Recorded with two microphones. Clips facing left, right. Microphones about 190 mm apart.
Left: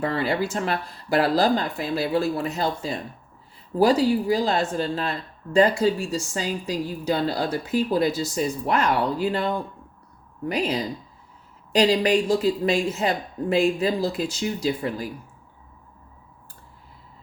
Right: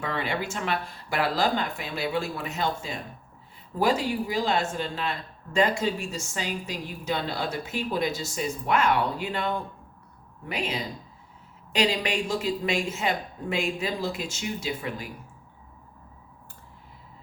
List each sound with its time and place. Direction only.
0.0 s a woman's voice: 35° left (ahead or behind)